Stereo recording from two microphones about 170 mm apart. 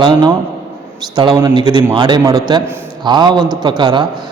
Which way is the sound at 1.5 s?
25° right (ahead or behind).